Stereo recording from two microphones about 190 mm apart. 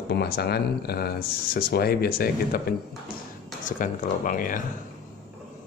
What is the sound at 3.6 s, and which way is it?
Speech, 45° left (ahead or behind).